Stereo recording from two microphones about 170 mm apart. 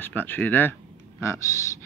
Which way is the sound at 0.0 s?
10° left (ahead or behind).